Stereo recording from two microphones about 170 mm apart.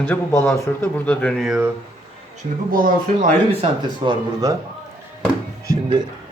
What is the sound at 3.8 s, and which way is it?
Speech, 25° right (ahead or behind).